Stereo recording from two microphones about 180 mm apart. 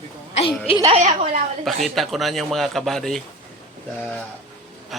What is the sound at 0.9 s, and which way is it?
Speech, 40° right (ahead or behind).